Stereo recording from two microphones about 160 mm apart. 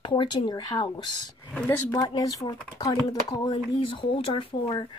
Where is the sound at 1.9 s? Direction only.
25° left (ahead or behind).